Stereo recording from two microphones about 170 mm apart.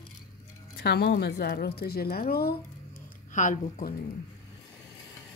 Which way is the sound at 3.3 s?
50° left (ahead or behind).